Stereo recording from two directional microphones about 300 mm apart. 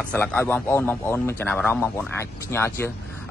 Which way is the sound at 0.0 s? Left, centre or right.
Centre.